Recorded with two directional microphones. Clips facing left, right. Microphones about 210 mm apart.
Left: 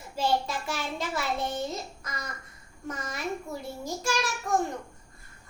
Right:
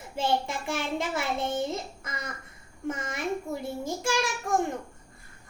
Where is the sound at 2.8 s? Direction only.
25° right (ahead or behind).